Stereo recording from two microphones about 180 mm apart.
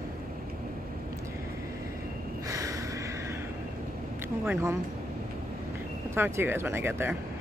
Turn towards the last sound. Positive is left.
turn(degrees=-10)  # may be behind; listen again after turning